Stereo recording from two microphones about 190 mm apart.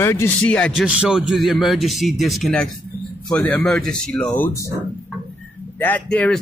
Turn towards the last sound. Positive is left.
turn(degrees=5)  # may be behind; listen again after turning